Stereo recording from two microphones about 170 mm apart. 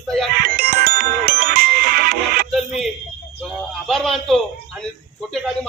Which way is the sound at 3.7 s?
Centre (ahead or behind).